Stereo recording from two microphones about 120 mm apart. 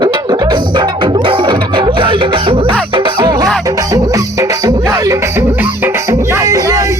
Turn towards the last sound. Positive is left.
turn(degrees=-30)  # may be behind; listen again after turning